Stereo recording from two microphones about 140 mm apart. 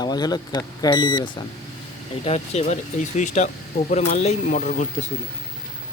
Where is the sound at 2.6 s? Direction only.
60° left (ahead or behind).